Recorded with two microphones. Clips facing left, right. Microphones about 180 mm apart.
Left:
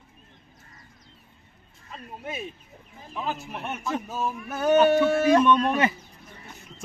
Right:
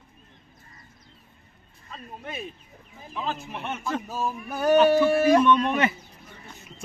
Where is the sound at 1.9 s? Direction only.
10° left (ahead or behind).